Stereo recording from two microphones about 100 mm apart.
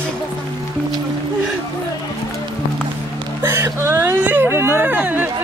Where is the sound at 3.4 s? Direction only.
25° right (ahead or behind).